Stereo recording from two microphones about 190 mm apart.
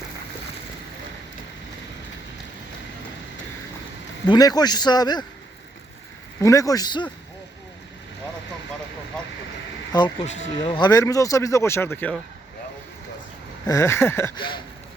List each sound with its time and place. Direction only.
4.3 s a man's voice: 20° left (ahead or behind)
6.4 s a man's voice: 15° left (ahead or behind)
10.2 s speech: 35° left (ahead or behind)
10.8 s speech: 20° left (ahead or behind)
13.7 s speech: 15° left (ahead or behind)
14.3 s a man's voice: 25° left (ahead or behind)